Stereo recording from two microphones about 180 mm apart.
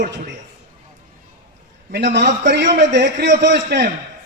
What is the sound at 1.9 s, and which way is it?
Speech, 70° right (ahead or behind).